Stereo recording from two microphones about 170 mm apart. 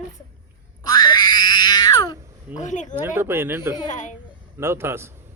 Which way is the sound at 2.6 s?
45° left (ahead or behind).